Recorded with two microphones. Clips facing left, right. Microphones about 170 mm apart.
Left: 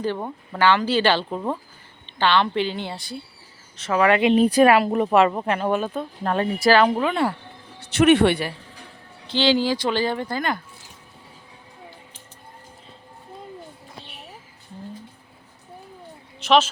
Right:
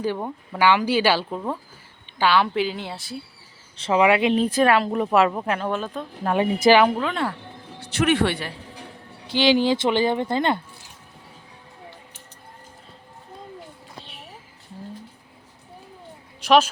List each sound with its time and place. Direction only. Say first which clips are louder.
0.0 s a woman's voice: even; 5° right (ahead or behind)
3.8 s speech: right 2 dB; 30° right (ahead or behind)
4.2 s a woman's voice: left 4 dB; centre (ahead or behind)
6.2 s speech: right 2 dB; 15° right (ahead or behind)
6.9 s speech: left 3 dB; 10° left (ahead or behind)
7.8 s speech: left 5 dB; 20° left (ahead or behind)
9.2 s speech: right 1 dB; 10° right (ahead or behind)